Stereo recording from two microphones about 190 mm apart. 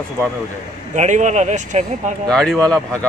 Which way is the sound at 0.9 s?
40° right (ahead or behind).